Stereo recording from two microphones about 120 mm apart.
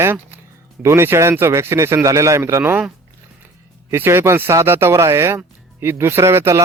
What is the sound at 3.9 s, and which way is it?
Speech, 20° right (ahead or behind).